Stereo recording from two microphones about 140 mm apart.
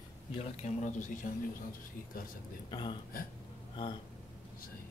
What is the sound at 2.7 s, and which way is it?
Speech, 35° left (ahead or behind).